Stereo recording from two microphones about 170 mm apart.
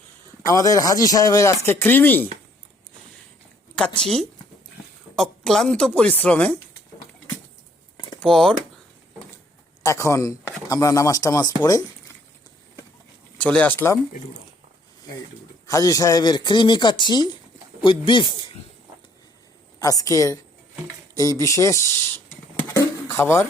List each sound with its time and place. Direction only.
0.4 s speech: 20° left (ahead or behind)
3.8 s a woman's voice: 5° left (ahead or behind)
7.9 s a sound: 25° left (ahead or behind)
8.2 s a woman's voice: 5° left (ahead or behind)
9.8 s a man's voice: 15° left (ahead or behind)
13.4 s speech: 10° left (ahead or behind)
15.6 s speech: 20° left (ahead or behind)
19.8 s speech: 20° left (ahead or behind)
22.5 s pigeon: 15° left (ahead or behind)